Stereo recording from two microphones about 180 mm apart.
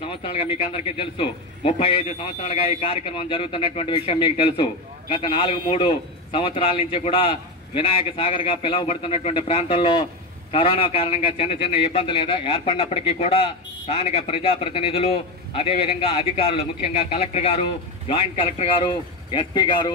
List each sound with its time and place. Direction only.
0.0 s a man's voice: 30° left (ahead or behind)